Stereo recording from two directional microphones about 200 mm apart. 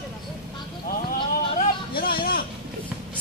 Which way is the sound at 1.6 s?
50° left (ahead or behind).